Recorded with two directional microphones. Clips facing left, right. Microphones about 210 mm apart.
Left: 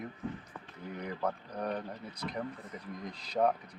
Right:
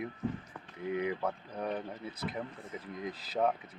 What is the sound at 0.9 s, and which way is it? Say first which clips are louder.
Speech: right 2 dB; 5° right (ahead or behind).